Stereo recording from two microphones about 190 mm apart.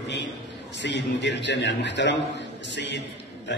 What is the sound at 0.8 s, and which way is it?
A man's voice, 65° left (ahead or behind).